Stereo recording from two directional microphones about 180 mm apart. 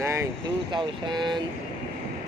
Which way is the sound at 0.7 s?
25° right (ahead or behind).